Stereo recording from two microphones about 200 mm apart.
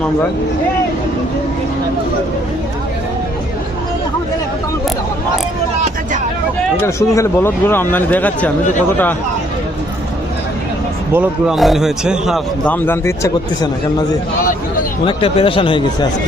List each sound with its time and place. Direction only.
6.8 s a man's voice: 15° left (ahead or behind)
11.1 s a man's voice: 5° right (ahead or behind); by 13.7 s 15° left (ahead or behind)
15.0 s speech: 25° left (ahead or behind)